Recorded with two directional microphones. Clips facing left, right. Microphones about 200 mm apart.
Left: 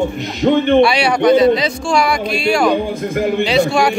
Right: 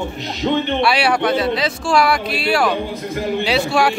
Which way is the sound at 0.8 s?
5° right (ahead or behind).